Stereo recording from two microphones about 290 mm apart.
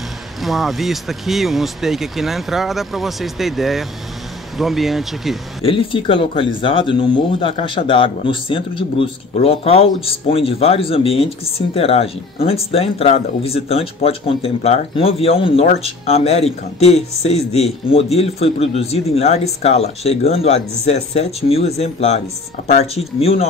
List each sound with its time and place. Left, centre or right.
0.4 s speech: centre
5.7 s speech: centre